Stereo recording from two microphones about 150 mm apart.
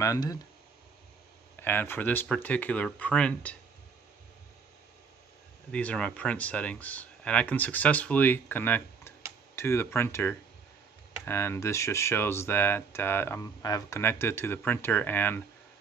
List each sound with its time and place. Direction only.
0.0 s speech: 25° left (ahead or behind)
1.6 s speech: 15° left (ahead or behind)
5.7 s speech: 10° left (ahead or behind)